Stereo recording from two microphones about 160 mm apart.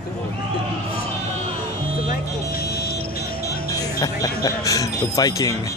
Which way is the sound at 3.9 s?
25° left (ahead or behind).